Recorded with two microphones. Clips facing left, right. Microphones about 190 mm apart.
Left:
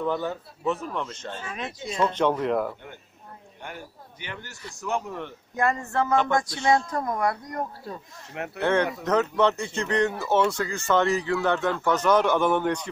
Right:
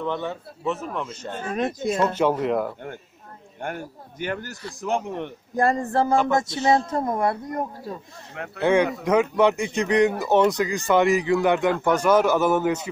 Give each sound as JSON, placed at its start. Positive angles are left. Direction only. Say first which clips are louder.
{"t": 0.0, "sound": "a man's voice", "louder": "even", "side_deg": 5}
{"t": 1.3, "sound": "speech", "louder": "right 8 dB", "side_deg": -50}
{"t": 2.1, "sound": "a man's voice", "louder": "right 2 dB", "side_deg": -5}
{"t": 3.6, "sound": "speech", "louder": "right 8 dB", "side_deg": -50}
{"t": 4.8, "sound": "speech", "louder": "right 4 dB", "side_deg": -30}
{"t": 8.6, "sound": "speech", "louder": "right 4 dB", "side_deg": -10}